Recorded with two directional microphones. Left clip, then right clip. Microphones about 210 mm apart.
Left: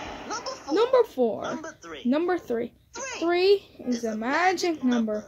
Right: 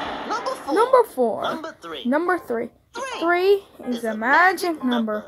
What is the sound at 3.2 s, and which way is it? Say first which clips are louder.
Speech: right 3 dB; 5° right (ahead or behind).